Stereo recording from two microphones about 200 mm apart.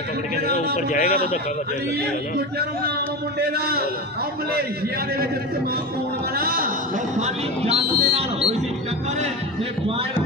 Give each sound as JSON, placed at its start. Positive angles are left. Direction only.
{"t": 0.7, "sound": "speech", "side_deg": 40}
{"t": 3.3, "sound": "a man's voice", "side_deg": -50}
{"t": 6.3, "sound": "a man's voice", "side_deg": -45}
{"t": 7.2, "sound": "speech", "side_deg": -30}